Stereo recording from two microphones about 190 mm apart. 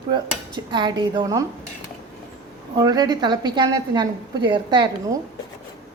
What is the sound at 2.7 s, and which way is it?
Speech, 20° right (ahead or behind).